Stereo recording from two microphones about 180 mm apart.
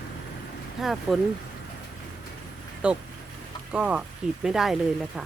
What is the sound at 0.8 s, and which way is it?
Speech, centre (ahead or behind).